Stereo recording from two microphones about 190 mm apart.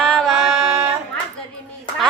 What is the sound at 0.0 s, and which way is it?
Music, 5° left (ahead or behind).